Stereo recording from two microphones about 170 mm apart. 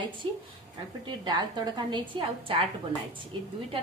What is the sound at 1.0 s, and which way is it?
A woman's voice, 25° right (ahead or behind).